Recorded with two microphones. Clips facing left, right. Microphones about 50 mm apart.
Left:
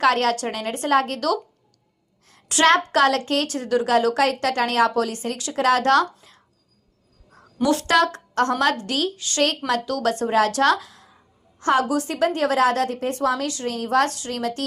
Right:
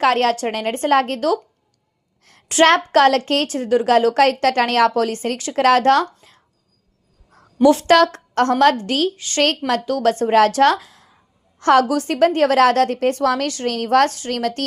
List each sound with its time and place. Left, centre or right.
0.0 s a woman's voice: right
2.5 s a woman's voice: right
3.5 s a woman's voice: right
3.8 s a woman's voice: right
5.8 s a woman's voice: right
7.6 s a woman's voice: right
8.7 s a woman's voice: right
11.6 s a woman's voice: right